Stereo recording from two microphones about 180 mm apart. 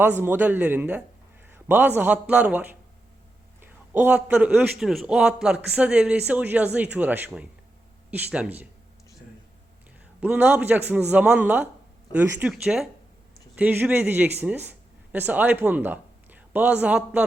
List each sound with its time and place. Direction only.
0.0 s a man's voice: 10° right (ahead or behind)
10.2 s a man's voice: 10° right (ahead or behind)